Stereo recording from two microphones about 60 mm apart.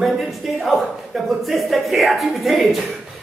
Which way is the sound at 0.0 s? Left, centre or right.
Centre.